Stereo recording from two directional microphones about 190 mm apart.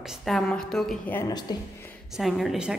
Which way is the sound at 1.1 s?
20° left (ahead or behind).